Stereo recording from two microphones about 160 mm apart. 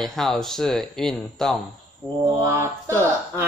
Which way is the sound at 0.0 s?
Centre (ahead or behind).